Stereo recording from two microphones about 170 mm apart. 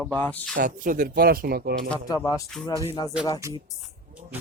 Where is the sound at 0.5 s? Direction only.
55° right (ahead or behind).